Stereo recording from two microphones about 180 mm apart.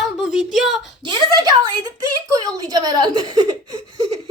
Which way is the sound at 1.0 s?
25° right (ahead or behind).